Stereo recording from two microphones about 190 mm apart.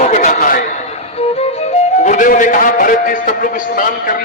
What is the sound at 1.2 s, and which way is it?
Music, 35° left (ahead or behind).